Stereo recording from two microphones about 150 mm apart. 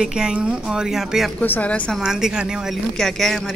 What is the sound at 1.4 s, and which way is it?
Speech, 10° left (ahead or behind).